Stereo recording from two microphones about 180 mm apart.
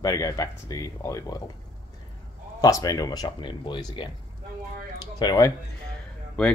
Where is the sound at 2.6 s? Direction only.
20° left (ahead or behind).